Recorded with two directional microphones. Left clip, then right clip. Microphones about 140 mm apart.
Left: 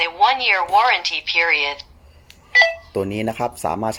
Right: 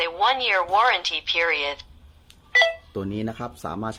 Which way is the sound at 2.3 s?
40° right (ahead or behind).